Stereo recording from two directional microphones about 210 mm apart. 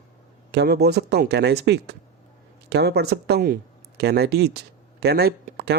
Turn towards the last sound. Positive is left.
turn(degrees=-50)  # may be behind; listen again after turning